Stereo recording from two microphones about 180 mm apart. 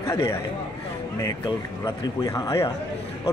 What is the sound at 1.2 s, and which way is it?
A man's voice, 20° left (ahead or behind).